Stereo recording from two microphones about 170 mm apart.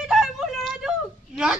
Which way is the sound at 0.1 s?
Centre (ahead or behind).